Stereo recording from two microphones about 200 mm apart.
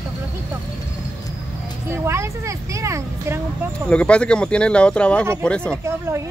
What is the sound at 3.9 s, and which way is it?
Speech, 5° left (ahead or behind).